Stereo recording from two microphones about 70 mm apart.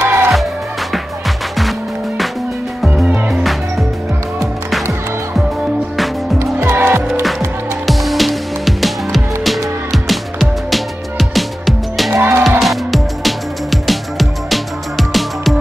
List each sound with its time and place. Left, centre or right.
0.0 s music: right
1.6 s music: centre
6.7 s music: right
7.2 s music: centre
12.1 s music: right
12.4 s music: centre